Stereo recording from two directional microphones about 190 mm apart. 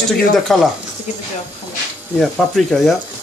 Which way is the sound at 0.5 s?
Centre (ahead or behind).